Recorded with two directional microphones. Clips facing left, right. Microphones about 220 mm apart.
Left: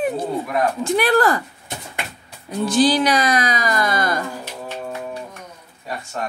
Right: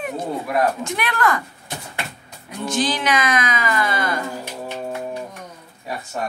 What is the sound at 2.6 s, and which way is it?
Speech, 35° left (ahead or behind).